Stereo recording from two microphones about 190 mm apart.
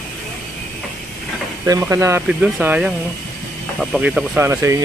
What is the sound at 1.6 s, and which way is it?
Speech, 15° right (ahead or behind).